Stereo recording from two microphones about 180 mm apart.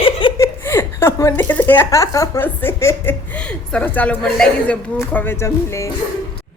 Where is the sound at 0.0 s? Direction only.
30° left (ahead or behind).